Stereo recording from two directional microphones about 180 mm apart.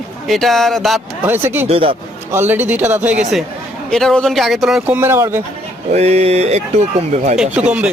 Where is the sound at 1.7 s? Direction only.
30° right (ahead or behind).